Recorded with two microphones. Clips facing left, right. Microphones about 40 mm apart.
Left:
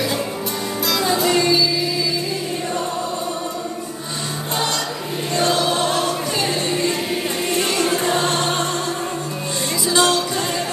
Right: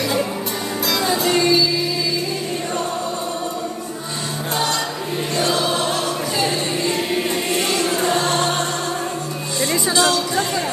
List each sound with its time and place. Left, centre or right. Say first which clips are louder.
0.8 s music: left 1 dB; centre
7.8 s choir: even; centre
9.9 s music: left 2 dB; left